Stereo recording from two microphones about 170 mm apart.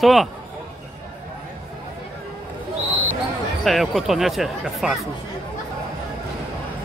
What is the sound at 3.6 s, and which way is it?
Speech, centre (ahead or behind).